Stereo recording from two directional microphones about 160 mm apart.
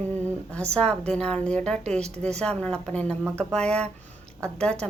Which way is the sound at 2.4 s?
5° left (ahead or behind).